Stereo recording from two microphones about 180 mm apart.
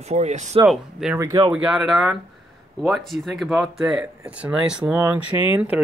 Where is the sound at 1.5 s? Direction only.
5° right (ahead or behind).